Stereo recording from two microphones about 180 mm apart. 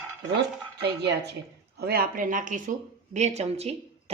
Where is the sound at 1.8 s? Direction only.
60° right (ahead or behind); by 3.7 s 35° right (ahead or behind).